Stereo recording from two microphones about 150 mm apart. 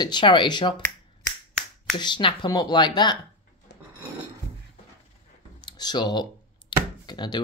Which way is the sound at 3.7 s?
90° left.